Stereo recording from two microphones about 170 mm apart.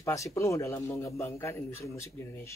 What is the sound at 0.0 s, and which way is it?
A man's voice, 15° left (ahead or behind).